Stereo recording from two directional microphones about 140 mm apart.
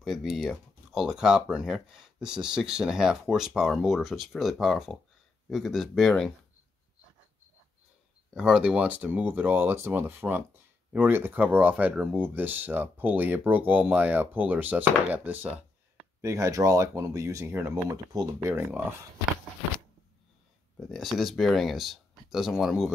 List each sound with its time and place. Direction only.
0.0 s speech: centre (ahead or behind)
8.4 s speech: 5° right (ahead or behind)
17.9 s speech: 25° right (ahead or behind)
18.5 s speech: 10° right (ahead or behind)
20.9 s speech: centre (ahead or behind)